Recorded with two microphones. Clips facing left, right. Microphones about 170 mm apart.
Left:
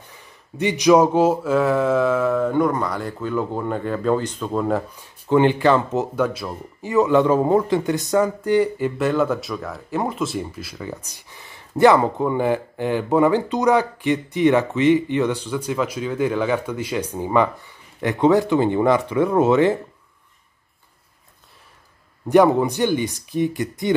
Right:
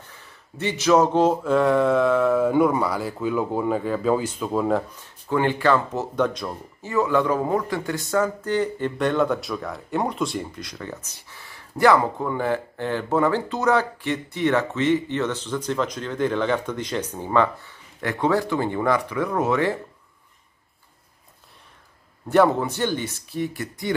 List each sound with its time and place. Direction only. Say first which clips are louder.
0.1 s speech: left 3 dB; 15° left (ahead or behind); by 4.8 s centre (ahead or behind)
5.3 s speech: left 4 dB; 20° left (ahead or behind)
6.1 s speech: left 1 dB; 5° left (ahead or behind)
6.9 s speech: left 5 dB; 20° left (ahead or behind)
22.3 s speech: left 4 dB; 15° left (ahead or behind)